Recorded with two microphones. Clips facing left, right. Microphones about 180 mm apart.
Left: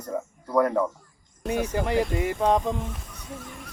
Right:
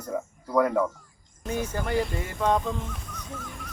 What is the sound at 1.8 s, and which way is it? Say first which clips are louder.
Speech: left 2 dB; 20° left (ahead or behind).